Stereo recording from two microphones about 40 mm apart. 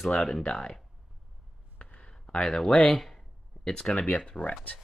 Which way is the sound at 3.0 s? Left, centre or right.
Centre.